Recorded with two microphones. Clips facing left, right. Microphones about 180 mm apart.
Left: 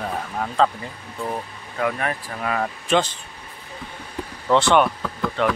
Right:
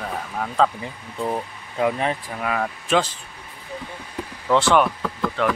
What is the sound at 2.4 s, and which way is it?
Speech, 5° right (ahead or behind).